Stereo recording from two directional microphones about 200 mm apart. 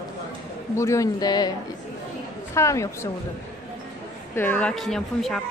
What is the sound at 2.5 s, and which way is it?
Speech, 15° left (ahead or behind).